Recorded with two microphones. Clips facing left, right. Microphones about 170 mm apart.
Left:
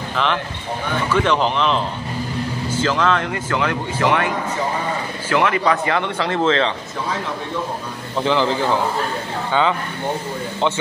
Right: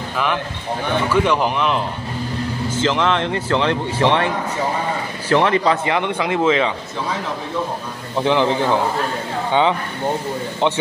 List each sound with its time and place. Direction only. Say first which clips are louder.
0.1 s speech: even; 10° right (ahead or behind)
2.8 s speech: right 1 dB; 20° right (ahead or behind)
5.3 s speech: right 2 dB; 30° right (ahead or behind)
5.9 s speech: right 1 dB; 15° right (ahead or behind)
8.2 s speech: right 2 dB; 15° right (ahead or behind)